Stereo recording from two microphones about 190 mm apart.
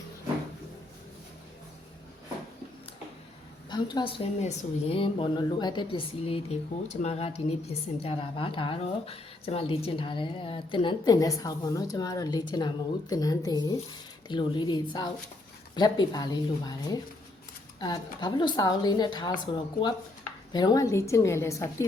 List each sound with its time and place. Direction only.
3.7 s a woman's voice: 20° left (ahead or behind)